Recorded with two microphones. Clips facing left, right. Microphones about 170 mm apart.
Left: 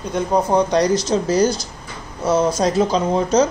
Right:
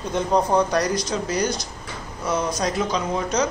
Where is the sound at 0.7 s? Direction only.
25° left (ahead or behind).